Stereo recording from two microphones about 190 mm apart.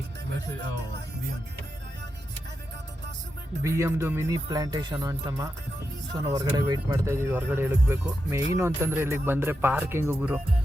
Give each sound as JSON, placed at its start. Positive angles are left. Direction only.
{"t": 3.6, "sound": "speech", "side_deg": -15}